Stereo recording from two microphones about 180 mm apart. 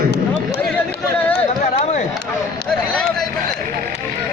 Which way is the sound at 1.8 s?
40° left (ahead or behind).